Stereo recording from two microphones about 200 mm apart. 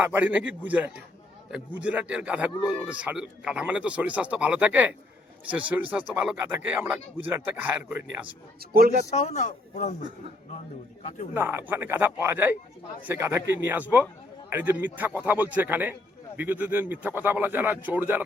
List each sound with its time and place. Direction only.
0.0 s a man's voice: 10° right (ahead or behind)
8.7 s speech: 50° right (ahead or behind)
9.0 s speech: 35° left (ahead or behind)
11.3 s a man's voice: 10° right (ahead or behind)